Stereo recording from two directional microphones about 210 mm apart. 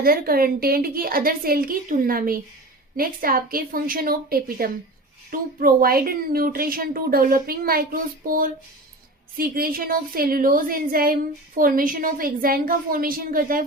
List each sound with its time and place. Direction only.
0.0 s a woman's voice: 45° right (ahead or behind)
9.4 s a woman's voice: 45° right (ahead or behind)